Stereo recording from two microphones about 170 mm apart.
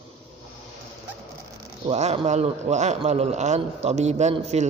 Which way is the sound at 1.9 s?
40° right (ahead or behind).